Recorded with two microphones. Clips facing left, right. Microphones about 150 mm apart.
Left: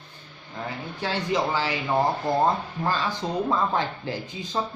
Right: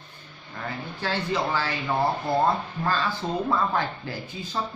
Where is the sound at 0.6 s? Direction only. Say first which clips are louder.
Left 1 dB; 20° left (ahead or behind).